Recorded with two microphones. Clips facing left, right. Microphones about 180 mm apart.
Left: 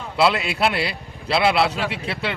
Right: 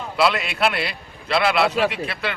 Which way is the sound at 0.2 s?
25° left (ahead or behind).